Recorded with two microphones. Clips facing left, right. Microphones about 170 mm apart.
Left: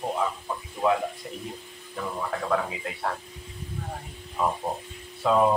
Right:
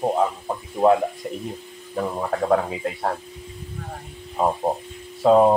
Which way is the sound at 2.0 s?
40° right (ahead or behind).